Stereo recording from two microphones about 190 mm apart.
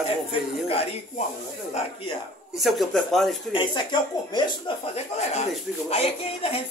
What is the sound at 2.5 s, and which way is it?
Speech, centre (ahead or behind).